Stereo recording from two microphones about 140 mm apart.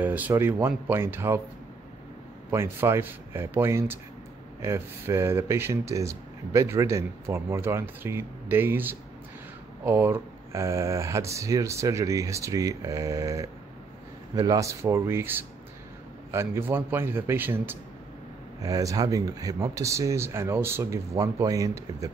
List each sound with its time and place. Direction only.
0.0 s a man's voice: 10° right (ahead or behind)
2.5 s a man's voice: 20° right (ahead or behind)